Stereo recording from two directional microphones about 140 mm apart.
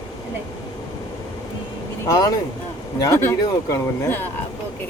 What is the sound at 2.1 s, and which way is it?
Speech, 30° left (ahead or behind).